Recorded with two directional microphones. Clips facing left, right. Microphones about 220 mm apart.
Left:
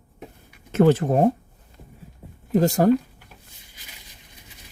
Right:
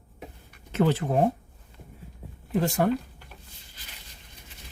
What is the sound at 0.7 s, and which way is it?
Speech, 45° left (ahead or behind).